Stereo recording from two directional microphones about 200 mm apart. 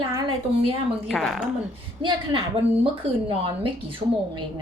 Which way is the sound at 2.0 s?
25° right (ahead or behind).